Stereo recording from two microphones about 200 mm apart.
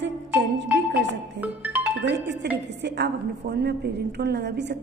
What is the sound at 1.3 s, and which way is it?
Music, 5° right (ahead or behind).